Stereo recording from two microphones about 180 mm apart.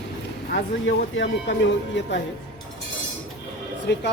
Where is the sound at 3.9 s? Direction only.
70° left (ahead or behind).